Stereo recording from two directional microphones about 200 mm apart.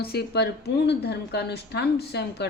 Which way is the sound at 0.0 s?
55° left (ahead or behind).